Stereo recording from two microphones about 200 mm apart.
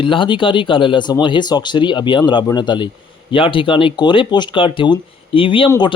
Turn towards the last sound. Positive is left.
turn(degrees=20)  # may be behind; listen again after turning